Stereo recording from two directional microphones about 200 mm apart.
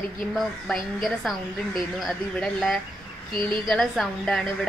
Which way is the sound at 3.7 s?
Centre (ahead or behind).